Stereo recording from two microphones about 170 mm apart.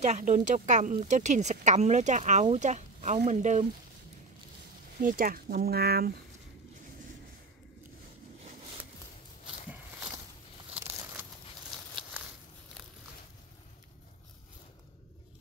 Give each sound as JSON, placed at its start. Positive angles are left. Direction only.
{"t": 0.0, "sound": "speech", "side_deg": -45}
{"t": 5.0, "sound": "speech", "side_deg": -55}